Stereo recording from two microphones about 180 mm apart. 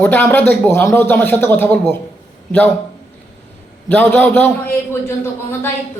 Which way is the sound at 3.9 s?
10° left (ahead or behind).